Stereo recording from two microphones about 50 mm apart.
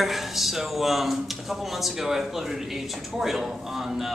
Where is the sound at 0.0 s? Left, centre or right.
Centre.